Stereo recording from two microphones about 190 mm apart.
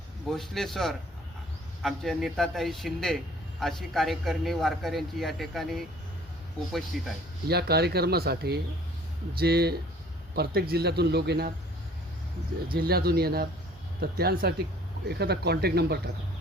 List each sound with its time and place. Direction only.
0.3 s a man's voice: centre (ahead or behind)
6.9 s a man's voice: centre (ahead or behind)
7.4 s speech: 55° right (ahead or behind)
12.7 s speech: 55° right (ahead or behind)